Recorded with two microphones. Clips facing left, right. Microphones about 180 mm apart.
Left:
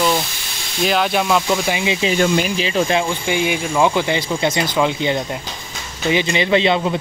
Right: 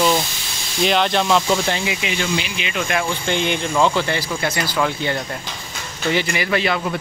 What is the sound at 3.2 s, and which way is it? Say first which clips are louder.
Speech: left 2 dB; 10° left (ahead or behind).